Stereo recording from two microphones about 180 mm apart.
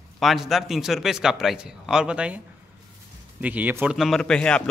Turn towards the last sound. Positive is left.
turn(degrees=5)  # may be behind; listen again after turning